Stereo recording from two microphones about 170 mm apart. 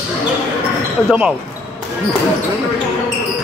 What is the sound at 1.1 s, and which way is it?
Speech, 5° right (ahead or behind).